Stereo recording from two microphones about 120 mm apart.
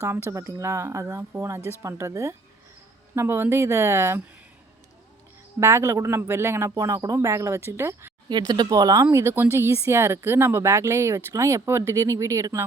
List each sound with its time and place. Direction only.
0.0 s speech: 20° right (ahead or behind)
5.5 s speech: 25° right (ahead or behind)
8.3 s speech: 35° right (ahead or behind)